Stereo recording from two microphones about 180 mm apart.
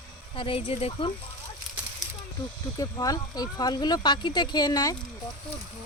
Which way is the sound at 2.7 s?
20° left (ahead or behind).